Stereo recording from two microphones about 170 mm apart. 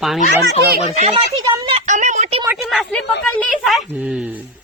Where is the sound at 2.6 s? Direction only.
Centre (ahead or behind).